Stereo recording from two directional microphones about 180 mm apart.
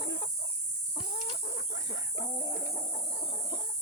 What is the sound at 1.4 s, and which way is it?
Chicken, 65° left (ahead or behind).